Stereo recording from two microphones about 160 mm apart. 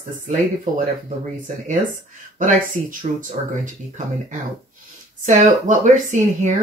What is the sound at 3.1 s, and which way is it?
Speech, 50° right (ahead or behind).